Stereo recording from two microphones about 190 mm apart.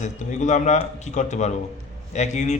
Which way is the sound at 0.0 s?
40° left (ahead or behind).